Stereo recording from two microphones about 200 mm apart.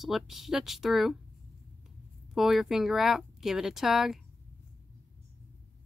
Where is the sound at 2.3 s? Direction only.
Centre (ahead or behind).